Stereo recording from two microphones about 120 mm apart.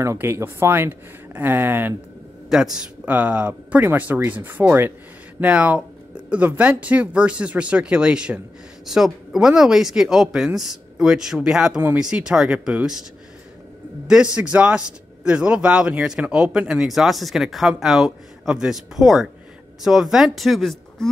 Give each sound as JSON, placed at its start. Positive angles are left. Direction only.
{"t": 0.0, "sound": "speech", "side_deg": -20}
{"t": 2.5, "sound": "speech", "side_deg": -5}
{"t": 14.0, "sound": "speech", "side_deg": -5}